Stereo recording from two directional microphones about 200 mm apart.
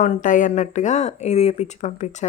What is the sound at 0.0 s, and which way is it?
Speech, 40° left (ahead or behind).